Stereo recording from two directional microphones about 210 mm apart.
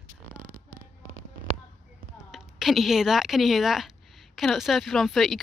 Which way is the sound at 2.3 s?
Centre (ahead or behind).